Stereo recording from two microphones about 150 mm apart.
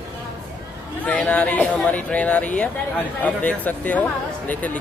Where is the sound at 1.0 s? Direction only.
10° left (ahead or behind).